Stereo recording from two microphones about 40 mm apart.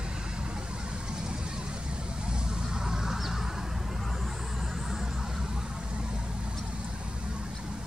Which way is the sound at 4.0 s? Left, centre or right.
Centre.